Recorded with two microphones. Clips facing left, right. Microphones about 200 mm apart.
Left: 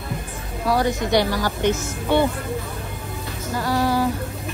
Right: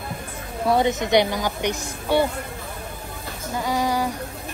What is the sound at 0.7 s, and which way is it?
A woman's voice, 20° right (ahead or behind).